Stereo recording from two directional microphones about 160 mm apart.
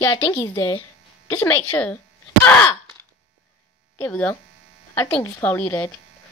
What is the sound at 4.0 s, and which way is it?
Speech, 10° left (ahead or behind).